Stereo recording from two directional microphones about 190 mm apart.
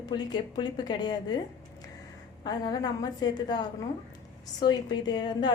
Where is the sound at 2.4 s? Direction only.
20° left (ahead or behind).